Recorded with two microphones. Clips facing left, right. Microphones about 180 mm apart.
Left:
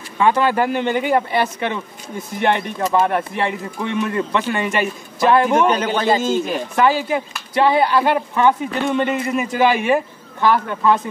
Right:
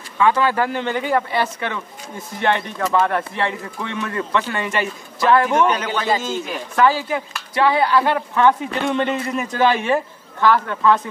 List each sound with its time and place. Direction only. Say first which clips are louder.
0.2 s a man's voice: left 1 dB; 20° left (ahead or behind)
6.7 s a man's voice: even; 20° left (ahead or behind)